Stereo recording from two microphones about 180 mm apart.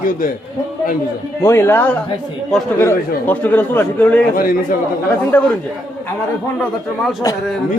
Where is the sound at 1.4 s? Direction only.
15° left (ahead or behind).